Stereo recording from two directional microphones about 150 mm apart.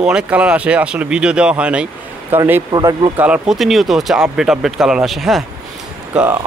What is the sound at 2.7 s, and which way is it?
Speech, 25° right (ahead or behind).